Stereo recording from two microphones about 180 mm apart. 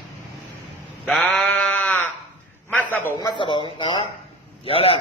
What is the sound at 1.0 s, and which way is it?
Sheep, centre (ahead or behind).